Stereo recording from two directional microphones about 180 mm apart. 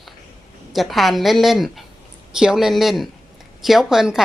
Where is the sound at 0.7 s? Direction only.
Centre (ahead or behind).